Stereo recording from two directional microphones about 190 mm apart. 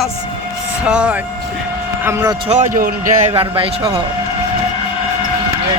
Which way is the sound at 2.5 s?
45° right (ahead or behind).